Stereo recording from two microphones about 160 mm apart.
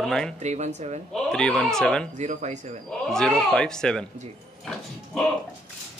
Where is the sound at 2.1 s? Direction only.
50° right (ahead or behind).